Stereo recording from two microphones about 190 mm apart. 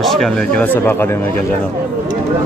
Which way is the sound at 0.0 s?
Centre (ahead or behind).